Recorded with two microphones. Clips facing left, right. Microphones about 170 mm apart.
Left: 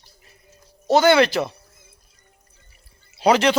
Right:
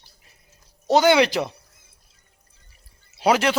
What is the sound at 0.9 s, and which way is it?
Speech, 15° right (ahead or behind).